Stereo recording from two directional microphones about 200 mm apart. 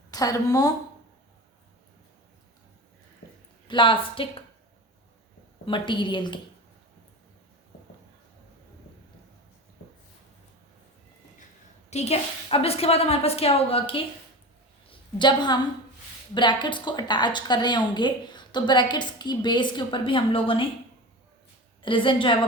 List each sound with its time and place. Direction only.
0.1 s a woman's voice: 20° left (ahead or behind)
3.7 s a woman's voice: 25° left (ahead or behind)
5.6 s a woman's voice: 25° left (ahead or behind)
11.9 s a woman's voice: 30° left (ahead or behind)
15.2 s a woman's voice: 20° left (ahead or behind)
21.8 s a woman's voice: 25° left (ahead or behind)